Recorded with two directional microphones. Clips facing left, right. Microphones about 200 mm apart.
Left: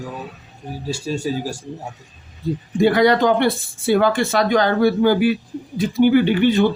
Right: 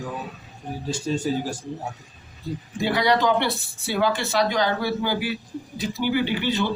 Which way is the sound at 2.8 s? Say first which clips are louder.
Left 7 dB; 50° left (ahead or behind).